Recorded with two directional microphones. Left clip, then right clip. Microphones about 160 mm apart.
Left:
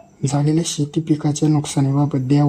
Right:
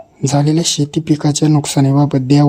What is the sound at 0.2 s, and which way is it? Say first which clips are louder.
Speech: right 5 dB; 25° right (ahead or behind).